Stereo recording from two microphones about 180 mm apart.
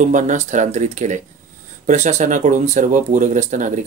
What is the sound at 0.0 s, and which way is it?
Speech, 45° right (ahead or behind).